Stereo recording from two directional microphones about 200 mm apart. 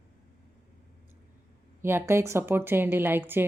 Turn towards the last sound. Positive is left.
turn(degrees=-10)  # may be behind; listen again after turning